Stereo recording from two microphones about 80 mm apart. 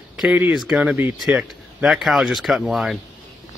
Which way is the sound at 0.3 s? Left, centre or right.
Right.